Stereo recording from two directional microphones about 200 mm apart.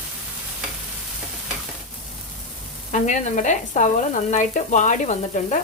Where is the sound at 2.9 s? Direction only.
35° left (ahead or behind).